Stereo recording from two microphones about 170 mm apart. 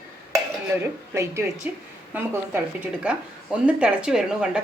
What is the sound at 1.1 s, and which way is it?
Speech, 15° right (ahead or behind).